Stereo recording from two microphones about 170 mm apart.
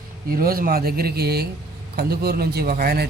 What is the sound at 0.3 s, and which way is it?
A man's voice, 60° right (ahead or behind).